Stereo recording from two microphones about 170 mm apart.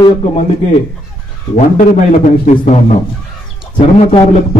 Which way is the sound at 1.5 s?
55° left (ahead or behind).